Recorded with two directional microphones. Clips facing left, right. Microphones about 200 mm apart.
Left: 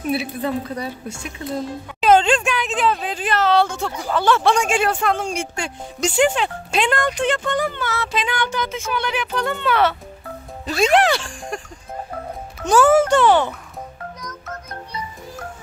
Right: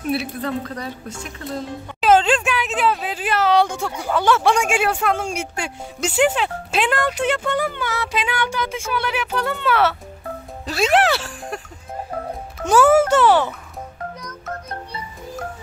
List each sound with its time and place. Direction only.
0.1 s a woman's voice: centre (ahead or behind)
2.0 s speech: 5° right (ahead or behind)
12.6 s speech: 10° right (ahead or behind)